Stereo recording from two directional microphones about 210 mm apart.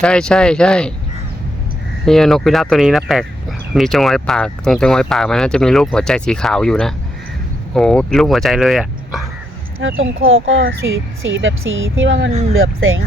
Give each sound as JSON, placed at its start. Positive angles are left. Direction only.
{"t": 0.0, "sound": "speech", "side_deg": 5}
{"t": 2.0, "sound": "speech", "side_deg": 0}
{"t": 9.8, "sound": "speech", "side_deg": -70}
{"t": 12.5, "sound": "speech", "side_deg": -75}